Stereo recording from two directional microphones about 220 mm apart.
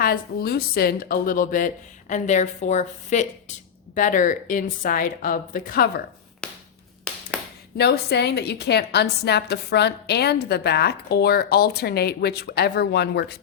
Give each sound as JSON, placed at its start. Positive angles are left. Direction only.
{"t": 0.0, "sound": "speech", "side_deg": 45}
{"t": 6.4, "sound": "a sound", "side_deg": 5}
{"t": 7.8, "sound": "a woman's voice", "side_deg": 50}